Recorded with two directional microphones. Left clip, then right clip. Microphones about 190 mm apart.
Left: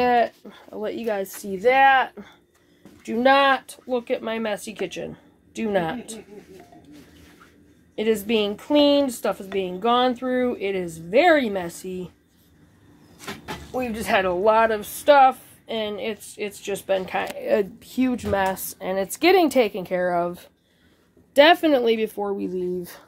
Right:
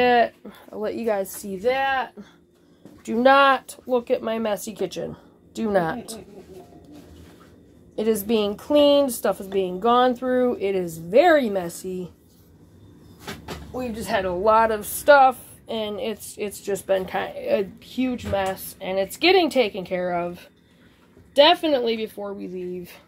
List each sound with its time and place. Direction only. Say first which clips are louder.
0.0 s speech: right 1 dB; centre (ahead or behind)
1.6 s a woman's voice: left 6 dB; 5° left (ahead or behind)
3.1 s speech: right 1 dB; 5° right (ahead or behind)
7.9 s a woman's voice: even; 5° right (ahead or behind)
13.7 s speech: left 3 dB; 20° left (ahead or behind); by 16.5 s 5° right (ahead or behind)
16.7 s a woman's voice: right 1 dB; 5° left (ahead or behind)
17.9 s a woman's voice: left 2 dB; 40° left (ahead or behind)
21.4 s speech: left 1 dB; 40° left (ahead or behind)